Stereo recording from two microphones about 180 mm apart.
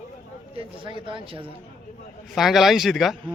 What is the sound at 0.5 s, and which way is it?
Speech, 30° right (ahead or behind).